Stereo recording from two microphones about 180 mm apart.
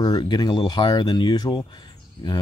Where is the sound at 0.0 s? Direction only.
25° left (ahead or behind).